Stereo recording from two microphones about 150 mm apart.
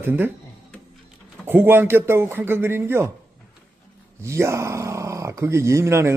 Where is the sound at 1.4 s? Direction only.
15° right (ahead or behind).